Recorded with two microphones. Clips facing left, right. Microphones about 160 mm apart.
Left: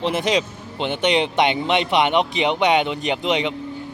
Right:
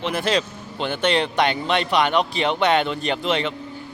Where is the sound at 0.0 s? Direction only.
20° left (ahead or behind).